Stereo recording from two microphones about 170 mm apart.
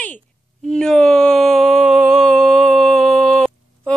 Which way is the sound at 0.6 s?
5° left (ahead or behind).